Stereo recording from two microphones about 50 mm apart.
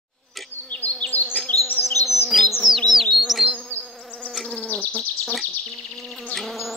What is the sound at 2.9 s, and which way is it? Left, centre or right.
Bee, centre.